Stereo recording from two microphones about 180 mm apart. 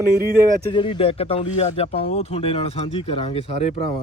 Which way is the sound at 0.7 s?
30° left (ahead or behind).